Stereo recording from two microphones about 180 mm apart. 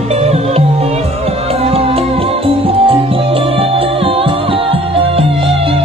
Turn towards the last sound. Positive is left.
turn(degrees=-30)  # may be behind; listen again after turning